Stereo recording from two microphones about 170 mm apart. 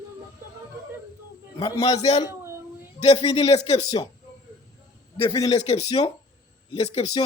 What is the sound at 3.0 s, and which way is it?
Speech, 35° left (ahead or behind).